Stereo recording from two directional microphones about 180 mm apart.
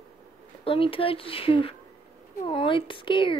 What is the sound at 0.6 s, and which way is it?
Speech, 30° left (ahead or behind).